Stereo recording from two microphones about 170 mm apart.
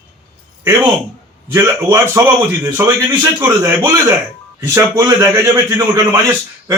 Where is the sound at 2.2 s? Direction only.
20° right (ahead or behind).